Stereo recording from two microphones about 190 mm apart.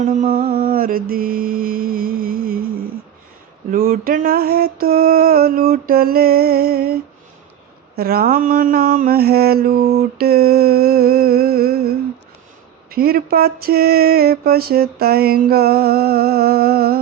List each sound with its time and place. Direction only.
0.0 s mantra: 35° right (ahead or behind)
0.6 s mantra: 50° right (ahead or behind)